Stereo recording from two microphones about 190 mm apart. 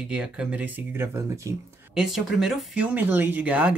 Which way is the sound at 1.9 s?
Centre (ahead or behind).